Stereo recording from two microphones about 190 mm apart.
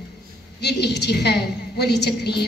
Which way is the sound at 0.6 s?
60° left (ahead or behind).